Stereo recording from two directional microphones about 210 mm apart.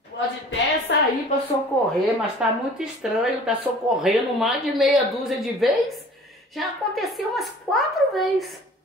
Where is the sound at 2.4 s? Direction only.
5° right (ahead or behind).